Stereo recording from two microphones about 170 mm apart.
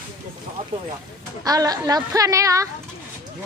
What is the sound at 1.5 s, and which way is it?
Speech, 20° right (ahead or behind).